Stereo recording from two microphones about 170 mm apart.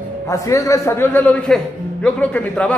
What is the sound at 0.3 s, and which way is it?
A man's voice, 20° left (ahead or behind).